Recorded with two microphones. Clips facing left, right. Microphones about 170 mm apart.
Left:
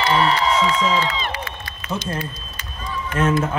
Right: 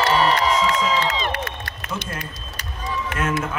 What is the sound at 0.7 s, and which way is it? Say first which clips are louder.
Music: left 1 dB; 55° right (ahead or behind).